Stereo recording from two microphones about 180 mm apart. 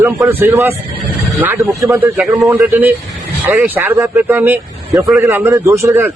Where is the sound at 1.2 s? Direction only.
Centre (ahead or behind).